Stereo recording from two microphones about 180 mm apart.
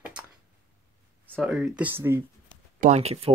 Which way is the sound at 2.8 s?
35° right (ahead or behind).